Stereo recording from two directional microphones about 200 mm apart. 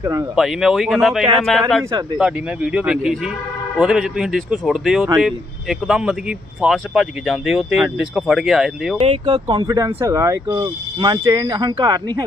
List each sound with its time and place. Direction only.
0.0 s speech: 15° right (ahead or behind)
0.4 s speech: centre (ahead or behind)
9.0 s speech: 25° right (ahead or behind)